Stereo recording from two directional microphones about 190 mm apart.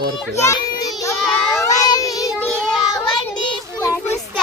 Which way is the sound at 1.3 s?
10° left (ahead or behind).